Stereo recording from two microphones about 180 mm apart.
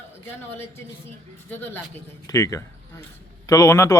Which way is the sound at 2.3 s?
15° left (ahead or behind).